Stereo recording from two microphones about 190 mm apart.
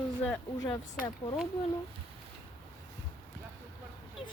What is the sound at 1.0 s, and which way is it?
Speech, 20° left (ahead or behind).